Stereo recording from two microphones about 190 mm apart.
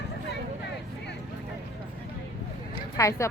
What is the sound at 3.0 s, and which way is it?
Speech, 15° left (ahead or behind).